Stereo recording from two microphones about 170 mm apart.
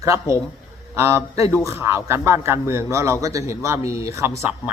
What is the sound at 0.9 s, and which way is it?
A man's voice, 15° right (ahead or behind).